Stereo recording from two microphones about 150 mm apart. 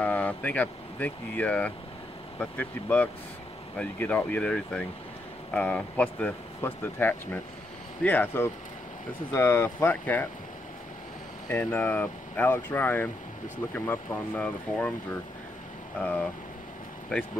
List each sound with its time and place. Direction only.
0.0 s speech: 10° left (ahead or behind)
11.4 s speech: 10° left (ahead or behind)
16.0 s speech: 10° left (ahead or behind)